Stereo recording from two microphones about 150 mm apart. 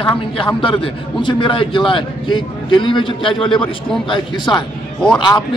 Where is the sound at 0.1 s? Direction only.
35° left (ahead or behind).